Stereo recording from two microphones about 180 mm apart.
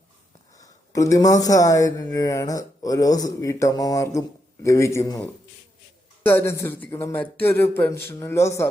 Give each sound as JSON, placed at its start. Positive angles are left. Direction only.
{"t": 0.6, "sound": "speech", "side_deg": 20}
{"t": 6.2, "sound": "speech", "side_deg": 10}